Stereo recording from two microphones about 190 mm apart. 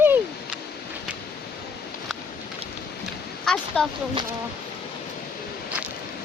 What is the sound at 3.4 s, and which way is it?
Speech, 5° left (ahead or behind).